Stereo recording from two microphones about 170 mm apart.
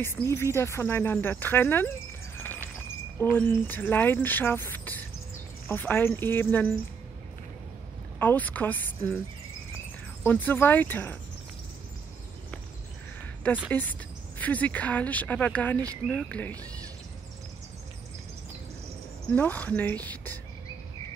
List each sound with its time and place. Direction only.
0.0 s speech: 15° left (ahead or behind)
2.3 s a sound: 10° left (ahead or behind)
3.2 s speech: 10° left (ahead or behind)
8.2 s speech: 10° left (ahead or behind)
10.2 s speech: 10° left (ahead or behind)
13.7 s speech: 10° left (ahead or behind)
19.3 s speech: 10° left (ahead or behind)